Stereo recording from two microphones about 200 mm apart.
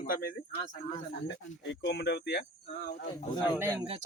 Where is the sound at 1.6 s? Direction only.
65° left (ahead or behind).